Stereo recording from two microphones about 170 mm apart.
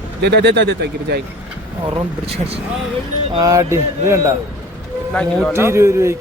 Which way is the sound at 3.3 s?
20° right (ahead or behind).